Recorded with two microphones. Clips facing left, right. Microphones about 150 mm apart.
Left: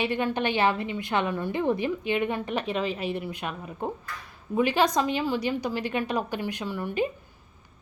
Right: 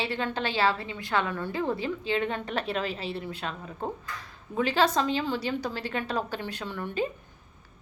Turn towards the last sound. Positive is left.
turn(degrees=10)  # may be behind; listen again after turning